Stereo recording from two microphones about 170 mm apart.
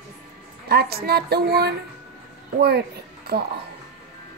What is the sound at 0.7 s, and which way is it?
Speech, 65° right (ahead or behind).